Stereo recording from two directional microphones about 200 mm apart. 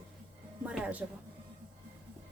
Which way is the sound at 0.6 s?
5° right (ahead or behind).